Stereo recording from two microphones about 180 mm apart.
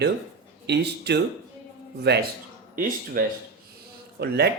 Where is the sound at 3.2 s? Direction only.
50° right (ahead or behind).